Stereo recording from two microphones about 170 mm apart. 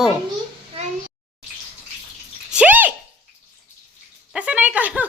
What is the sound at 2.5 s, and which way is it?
Drip, 10° right (ahead or behind).